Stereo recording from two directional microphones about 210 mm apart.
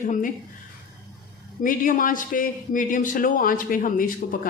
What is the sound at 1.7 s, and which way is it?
A man's voice, 40° left (ahead or behind).